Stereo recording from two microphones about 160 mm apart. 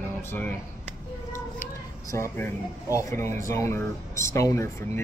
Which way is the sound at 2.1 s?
15° left (ahead or behind).